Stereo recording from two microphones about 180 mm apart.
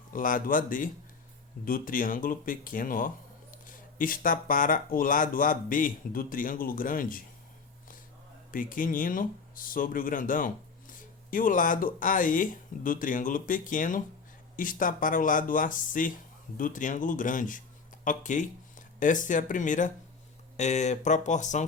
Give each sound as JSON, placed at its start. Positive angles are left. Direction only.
{"t": 0.1, "sound": "speech", "side_deg": 50}
{"t": 8.5, "sound": "speech", "side_deg": 50}